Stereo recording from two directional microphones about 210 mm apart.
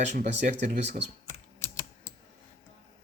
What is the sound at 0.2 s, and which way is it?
Speech, 55° right (ahead or behind).